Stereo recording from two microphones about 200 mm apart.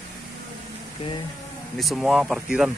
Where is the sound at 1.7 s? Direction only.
Centre (ahead or behind).